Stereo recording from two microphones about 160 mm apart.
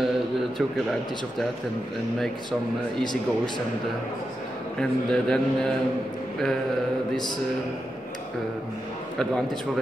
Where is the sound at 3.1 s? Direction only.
25° left (ahead or behind).